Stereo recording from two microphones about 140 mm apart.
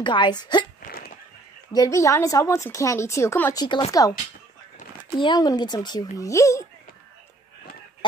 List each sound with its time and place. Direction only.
0.0 s speech: 35° left (ahead or behind)
0.8 s a sound: 90° left
1.7 s speech: 25° left (ahead or behind)
5.2 s speech: 30° left (ahead or behind)